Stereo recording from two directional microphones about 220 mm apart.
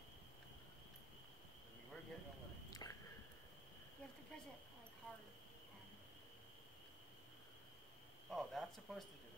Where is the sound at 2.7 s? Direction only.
15° left (ahead or behind).